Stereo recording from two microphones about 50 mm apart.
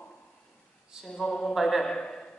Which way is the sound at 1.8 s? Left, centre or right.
Centre.